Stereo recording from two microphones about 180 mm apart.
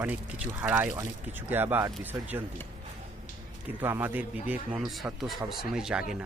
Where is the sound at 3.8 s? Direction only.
10° right (ahead or behind).